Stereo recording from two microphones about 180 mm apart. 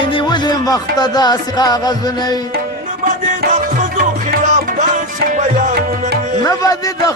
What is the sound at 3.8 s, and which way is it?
Music, 45° right (ahead or behind).